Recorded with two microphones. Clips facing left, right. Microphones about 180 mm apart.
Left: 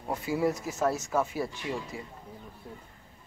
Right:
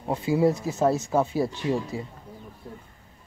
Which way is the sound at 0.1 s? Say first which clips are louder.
Right 6 dB; 25° right (ahead or behind).